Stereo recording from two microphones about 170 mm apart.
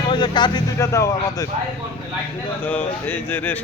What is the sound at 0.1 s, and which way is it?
Speech, 25° left (ahead or behind).